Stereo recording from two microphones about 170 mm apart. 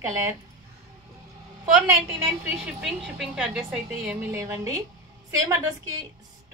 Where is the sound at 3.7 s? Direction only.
10° right (ahead or behind).